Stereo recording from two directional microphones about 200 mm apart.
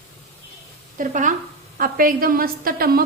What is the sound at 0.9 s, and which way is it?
A woman's voice, 40° right (ahead or behind).